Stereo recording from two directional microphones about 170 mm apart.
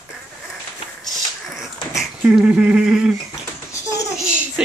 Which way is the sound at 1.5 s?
Centre (ahead or behind).